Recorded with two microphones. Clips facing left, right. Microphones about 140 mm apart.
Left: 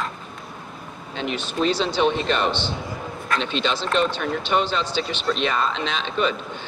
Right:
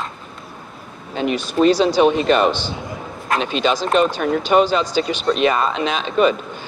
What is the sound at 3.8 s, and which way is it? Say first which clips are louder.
Speech: right 5 dB; 45° right (ahead or behind).